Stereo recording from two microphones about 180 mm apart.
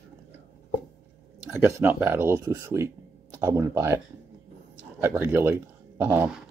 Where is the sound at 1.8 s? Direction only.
10° right (ahead or behind).